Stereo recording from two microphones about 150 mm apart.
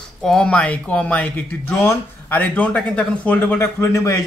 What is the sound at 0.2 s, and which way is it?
Speech, 5° left (ahead or behind).